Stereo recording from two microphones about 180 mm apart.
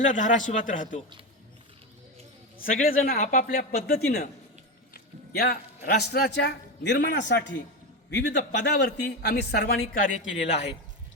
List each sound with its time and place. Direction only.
0.0 s speech: 45° left (ahead or behind)
2.6 s a man's voice: 50° left (ahead or behind)